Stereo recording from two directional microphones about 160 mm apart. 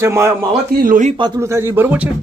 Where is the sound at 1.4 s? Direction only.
15° right (ahead or behind).